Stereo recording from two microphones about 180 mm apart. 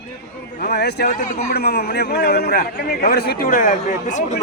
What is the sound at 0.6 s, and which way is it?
Speech, 60° left (ahead or behind).